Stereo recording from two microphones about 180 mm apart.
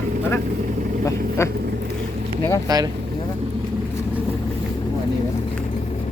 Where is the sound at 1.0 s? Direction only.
15° left (ahead or behind).